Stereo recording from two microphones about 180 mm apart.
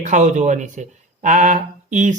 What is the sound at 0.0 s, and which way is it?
A man's voice, 40° right (ahead or behind).